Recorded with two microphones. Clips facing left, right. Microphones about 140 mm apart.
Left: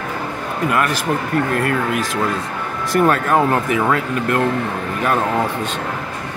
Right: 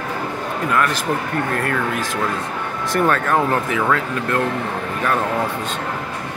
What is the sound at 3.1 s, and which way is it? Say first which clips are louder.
Speech: left 1 dB; 15° left (ahead or behind).